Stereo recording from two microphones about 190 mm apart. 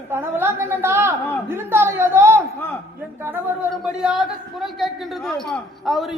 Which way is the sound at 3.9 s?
5° right (ahead or behind).